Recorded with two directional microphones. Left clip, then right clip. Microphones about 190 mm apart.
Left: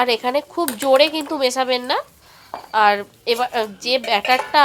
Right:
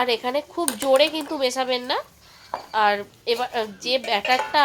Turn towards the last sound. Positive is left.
turn(degrees=20)  # may be behind; listen again after turning